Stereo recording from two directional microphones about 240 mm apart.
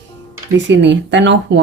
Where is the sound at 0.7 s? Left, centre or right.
Right.